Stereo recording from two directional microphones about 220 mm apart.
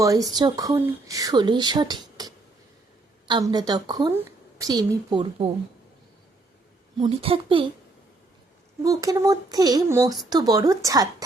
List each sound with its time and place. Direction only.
0.0 s a woman's voice: 15° right (ahead or behind)
7.0 s a woman's voice: 25° right (ahead or behind)
8.8 s speech: 15° right (ahead or behind)